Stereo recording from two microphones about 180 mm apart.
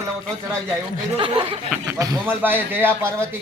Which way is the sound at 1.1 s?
30° right (ahead or behind).